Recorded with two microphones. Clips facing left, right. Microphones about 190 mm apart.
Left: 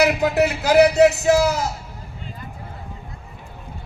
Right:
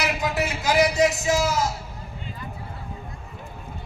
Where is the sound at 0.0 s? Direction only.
65° left (ahead or behind).